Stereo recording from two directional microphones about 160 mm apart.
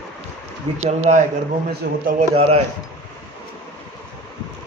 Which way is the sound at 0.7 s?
45° right (ahead or behind).